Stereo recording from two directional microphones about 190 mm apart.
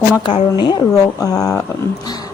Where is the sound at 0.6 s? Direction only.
20° left (ahead or behind).